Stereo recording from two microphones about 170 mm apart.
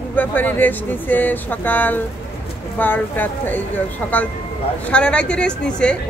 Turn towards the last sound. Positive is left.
turn(degrees=5)  # may be behind; listen again after turning